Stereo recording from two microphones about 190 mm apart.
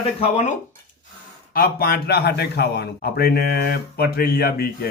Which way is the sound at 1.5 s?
50° left (ahead or behind).